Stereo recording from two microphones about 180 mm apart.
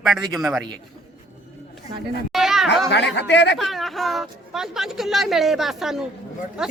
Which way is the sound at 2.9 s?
75° left (ahead or behind).